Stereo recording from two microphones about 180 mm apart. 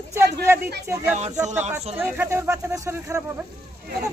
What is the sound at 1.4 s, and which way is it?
Speech, 40° right (ahead or behind).